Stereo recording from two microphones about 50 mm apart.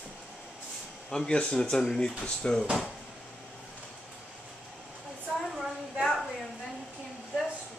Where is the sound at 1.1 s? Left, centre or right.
Centre.